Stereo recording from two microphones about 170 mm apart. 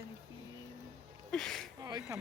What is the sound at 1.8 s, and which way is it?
Speech, 20° right (ahead or behind).